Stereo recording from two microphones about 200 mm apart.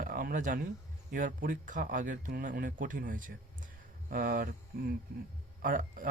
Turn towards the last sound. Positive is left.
turn(degrees=-40)  # may be behind; listen again after turning